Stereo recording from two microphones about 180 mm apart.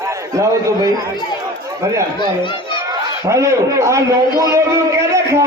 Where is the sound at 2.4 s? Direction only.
25° left (ahead or behind).